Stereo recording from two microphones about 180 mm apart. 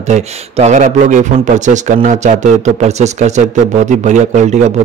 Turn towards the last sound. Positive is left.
turn(degrees=-40)  # may be behind; listen again after turning